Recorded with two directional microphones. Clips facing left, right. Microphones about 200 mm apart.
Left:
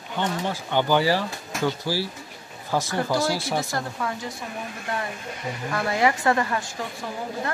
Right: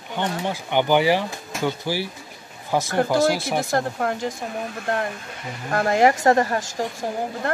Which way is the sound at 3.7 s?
50° right (ahead or behind).